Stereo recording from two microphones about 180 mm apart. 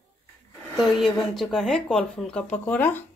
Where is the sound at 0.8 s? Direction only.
Centre (ahead or behind).